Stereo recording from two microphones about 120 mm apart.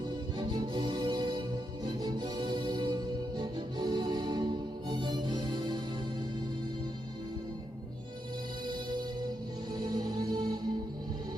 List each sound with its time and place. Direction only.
0.0 s music: 35° right (ahead or behind)
8.6 s music: 35° right (ahead or behind)